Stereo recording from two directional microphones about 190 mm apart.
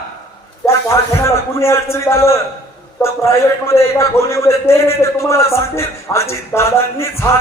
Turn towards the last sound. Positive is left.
turn(degrees=15)  # may be behind; listen again after turning